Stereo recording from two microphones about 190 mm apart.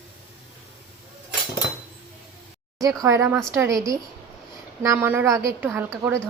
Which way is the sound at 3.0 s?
15° right (ahead or behind).